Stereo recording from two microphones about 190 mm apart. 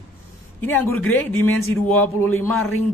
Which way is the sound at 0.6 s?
10° left (ahead or behind).